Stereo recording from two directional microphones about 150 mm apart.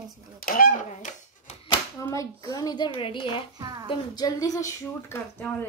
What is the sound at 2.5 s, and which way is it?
Speech, 25° left (ahead or behind).